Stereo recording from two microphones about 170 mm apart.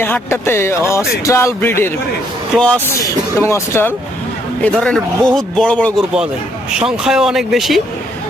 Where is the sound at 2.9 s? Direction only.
20° left (ahead or behind).